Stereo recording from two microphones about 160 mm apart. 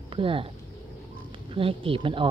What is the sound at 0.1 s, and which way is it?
Speech, 35° right (ahead or behind).